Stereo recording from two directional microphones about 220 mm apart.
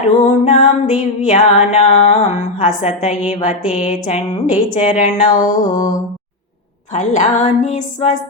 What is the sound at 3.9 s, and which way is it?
Music, 30° left (ahead or behind).